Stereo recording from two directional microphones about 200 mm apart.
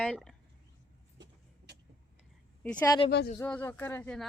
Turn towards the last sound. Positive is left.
turn(degrees=10)  # may be behind; listen again after turning